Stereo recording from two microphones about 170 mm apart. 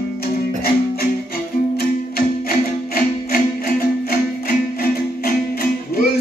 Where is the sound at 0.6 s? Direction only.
65° left (ahead or behind).